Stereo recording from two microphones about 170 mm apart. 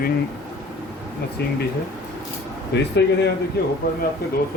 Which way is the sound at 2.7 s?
90° left.